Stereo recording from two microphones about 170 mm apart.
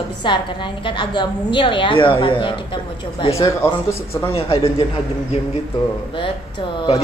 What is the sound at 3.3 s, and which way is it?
Mantra, 20° left (ahead or behind).